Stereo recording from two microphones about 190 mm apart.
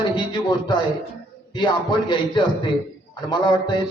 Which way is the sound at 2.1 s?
25° left (ahead or behind).